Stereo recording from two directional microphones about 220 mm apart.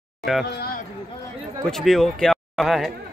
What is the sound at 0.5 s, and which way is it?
Speech, 45° left (ahead or behind).